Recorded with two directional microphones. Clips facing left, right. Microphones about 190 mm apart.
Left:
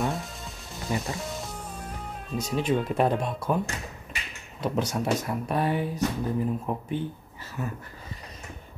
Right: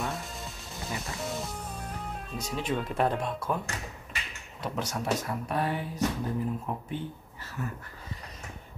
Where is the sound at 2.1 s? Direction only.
Centre (ahead or behind).